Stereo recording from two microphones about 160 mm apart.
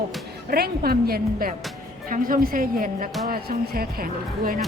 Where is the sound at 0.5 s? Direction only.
75° right (ahead or behind).